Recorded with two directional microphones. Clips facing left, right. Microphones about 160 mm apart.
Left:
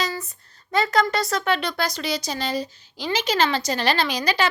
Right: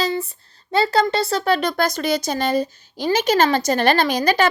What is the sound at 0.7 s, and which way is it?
Speech, 30° right (ahead or behind).